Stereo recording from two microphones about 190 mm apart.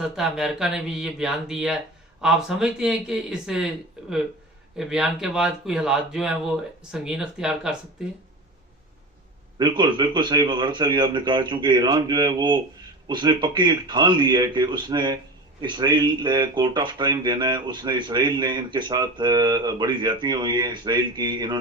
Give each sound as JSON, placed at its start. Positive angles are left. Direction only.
{"t": 0.0, "sound": "speech", "side_deg": 0}
{"t": 4.8, "sound": "speech", "side_deg": 0}
{"t": 9.6, "sound": "speech", "side_deg": -25}